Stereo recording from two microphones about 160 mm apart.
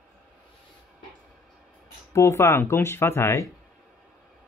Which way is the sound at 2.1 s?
20° left (ahead or behind).